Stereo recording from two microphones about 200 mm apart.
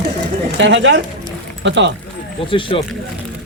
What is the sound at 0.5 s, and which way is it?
Speech, 65° right (ahead or behind).